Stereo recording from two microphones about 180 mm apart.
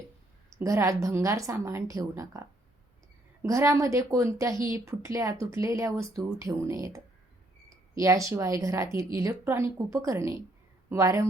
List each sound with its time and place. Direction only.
0.5 s a woman's voice: 15° right (ahead or behind)
3.4 s speech: 15° right (ahead or behind)